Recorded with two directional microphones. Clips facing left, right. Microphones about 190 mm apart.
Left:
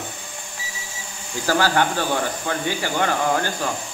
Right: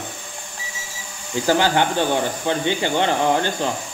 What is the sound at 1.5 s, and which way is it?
Speech, 20° right (ahead or behind).